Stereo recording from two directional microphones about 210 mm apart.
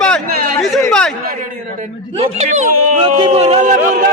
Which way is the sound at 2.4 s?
35° right (ahead or behind).